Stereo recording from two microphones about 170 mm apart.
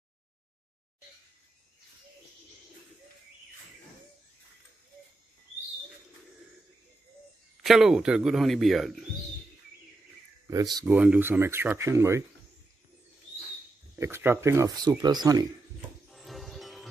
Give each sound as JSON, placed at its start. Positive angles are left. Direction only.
{"t": 7.6, "sound": "a man's voice", "side_deg": 0}
{"t": 10.4, "sound": "speech", "side_deg": -20}
{"t": 10.9, "sound": "speech", "side_deg": -10}
{"t": 13.9, "sound": "speech", "side_deg": -15}
{"t": 16.1, "sound": "music", "side_deg": 0}